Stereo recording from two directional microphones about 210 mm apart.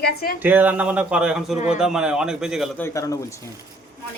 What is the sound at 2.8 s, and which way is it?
Speech, 15° left (ahead or behind).